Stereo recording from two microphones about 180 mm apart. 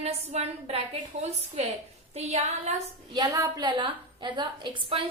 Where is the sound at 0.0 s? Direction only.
35° right (ahead or behind).